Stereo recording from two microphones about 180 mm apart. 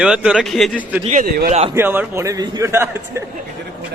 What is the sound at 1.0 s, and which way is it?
Speech, 45° right (ahead or behind).